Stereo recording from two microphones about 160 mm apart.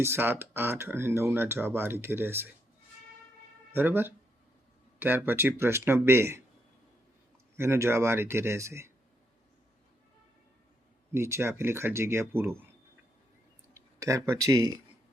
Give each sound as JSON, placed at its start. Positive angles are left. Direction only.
{"t": 0.0, "sound": "speech", "side_deg": -15}
{"t": 3.8, "sound": "speech", "side_deg": -10}
{"t": 7.5, "sound": "speech", "side_deg": -15}
{"t": 11.1, "sound": "speech", "side_deg": -15}
{"t": 13.7, "sound": "speech", "side_deg": -20}